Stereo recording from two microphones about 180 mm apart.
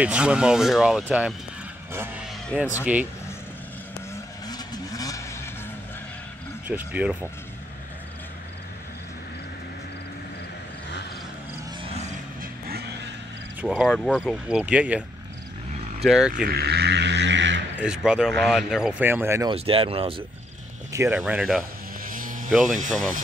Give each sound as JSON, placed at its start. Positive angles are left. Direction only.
{"t": 0.0, "sound": "speech", "side_deg": -5}
{"t": 2.8, "sound": "speech", "side_deg": -10}
{"t": 4.1, "sound": "vehicle", "side_deg": 20}
{"t": 6.7, "sound": "speech", "side_deg": -10}
{"t": 12.4, "sound": "vehicle", "side_deg": -60}
{"t": 13.6, "sound": "speech", "side_deg": 0}
{"t": 16.4, "sound": "a sound", "side_deg": -60}
{"t": 17.7, "sound": "speech", "side_deg": -5}
{"t": 19.5, "sound": "speech", "side_deg": -30}
{"t": 20.9, "sound": "speech", "side_deg": -10}
{"t": 22.0, "sound": "vehicle", "side_deg": -50}
{"t": 22.7, "sound": "speech", "side_deg": -45}